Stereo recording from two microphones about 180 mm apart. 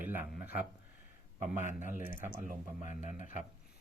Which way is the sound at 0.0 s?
10° right (ahead or behind).